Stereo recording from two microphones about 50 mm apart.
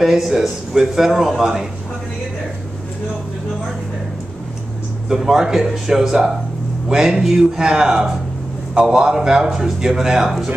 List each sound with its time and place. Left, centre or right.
0.0 s a man's voice: centre
5.1 s a man's voice: centre